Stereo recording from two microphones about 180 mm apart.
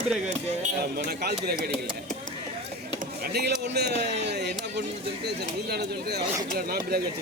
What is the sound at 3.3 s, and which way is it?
Speech, 65° right (ahead or behind).